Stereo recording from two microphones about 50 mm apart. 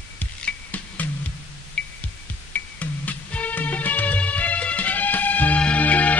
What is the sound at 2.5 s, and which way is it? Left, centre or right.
Music, left.